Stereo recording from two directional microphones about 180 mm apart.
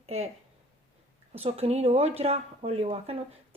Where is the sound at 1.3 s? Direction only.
35° right (ahead or behind).